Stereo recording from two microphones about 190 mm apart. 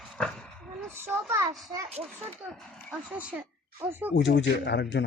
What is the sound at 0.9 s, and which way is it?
Speech, 10° right (ahead or behind).